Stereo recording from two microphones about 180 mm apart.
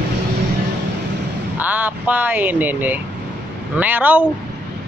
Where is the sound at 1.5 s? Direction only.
10° right (ahead or behind).